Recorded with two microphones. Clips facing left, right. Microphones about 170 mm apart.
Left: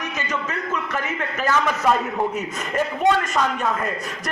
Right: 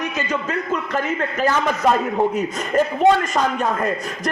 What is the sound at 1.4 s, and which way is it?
A man's voice, 30° right (ahead or behind).